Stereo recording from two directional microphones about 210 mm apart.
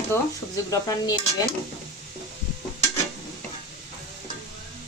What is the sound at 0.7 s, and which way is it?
Speech, 20° left (ahead or behind).